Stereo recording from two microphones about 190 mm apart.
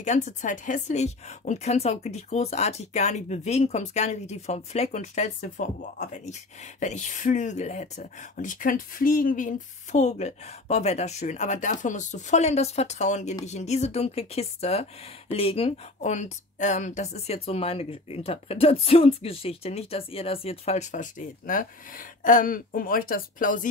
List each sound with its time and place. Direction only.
0.0 s speech: 40° left (ahead or behind)